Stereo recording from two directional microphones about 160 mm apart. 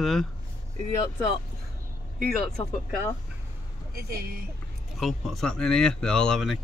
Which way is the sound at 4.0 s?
70° right (ahead or behind).